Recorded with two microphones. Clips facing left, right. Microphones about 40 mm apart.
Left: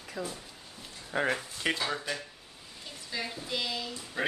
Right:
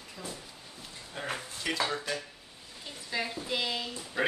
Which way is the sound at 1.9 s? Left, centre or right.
Centre.